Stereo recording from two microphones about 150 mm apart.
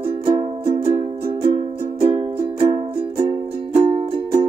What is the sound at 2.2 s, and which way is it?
Music, 35° right (ahead or behind).